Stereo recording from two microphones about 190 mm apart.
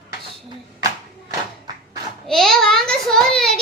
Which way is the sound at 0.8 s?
20° right (ahead or behind).